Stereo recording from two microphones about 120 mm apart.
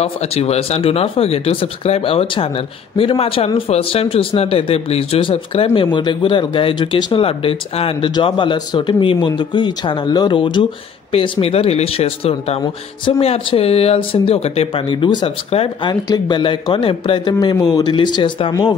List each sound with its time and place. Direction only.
0.0 s speech: 60° left (ahead or behind)
5.9 s speech: 40° left (ahead or behind); by 14.7 s 60° left (ahead or behind)
14.9 s speech: 40° left (ahead or behind)
15.5 s speech: 55° left (ahead or behind)
15.9 s speech: 35° left (ahead or behind)